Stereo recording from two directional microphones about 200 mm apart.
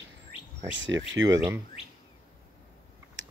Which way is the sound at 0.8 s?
70° right (ahead or behind).